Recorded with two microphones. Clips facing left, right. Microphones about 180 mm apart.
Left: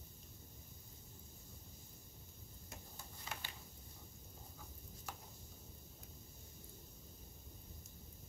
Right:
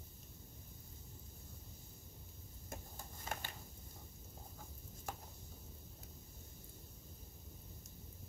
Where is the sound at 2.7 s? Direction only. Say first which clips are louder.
Right 6 dB; 45° right (ahead or behind).